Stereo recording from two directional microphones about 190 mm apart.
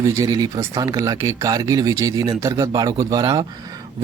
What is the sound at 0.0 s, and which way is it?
Speech, 20° right (ahead or behind).